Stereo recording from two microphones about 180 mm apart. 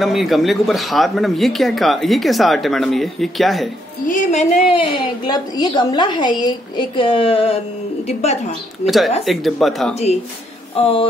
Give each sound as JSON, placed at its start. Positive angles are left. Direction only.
{"t": 0.0, "sound": "speech", "side_deg": 0}
{"t": 4.1, "sound": "speech", "side_deg": 45}
{"t": 4.6, "sound": "a woman's voice", "side_deg": 30}
{"t": 8.8, "sound": "speech", "side_deg": 0}
{"t": 10.8, "sound": "a woman's voice", "side_deg": 30}